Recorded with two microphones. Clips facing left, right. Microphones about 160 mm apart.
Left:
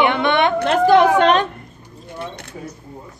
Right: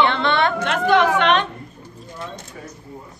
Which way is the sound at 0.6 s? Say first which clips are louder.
Left 7 dB; 35° left (ahead or behind).